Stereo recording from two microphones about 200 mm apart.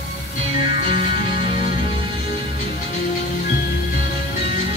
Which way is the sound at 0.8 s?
45° left (ahead or behind).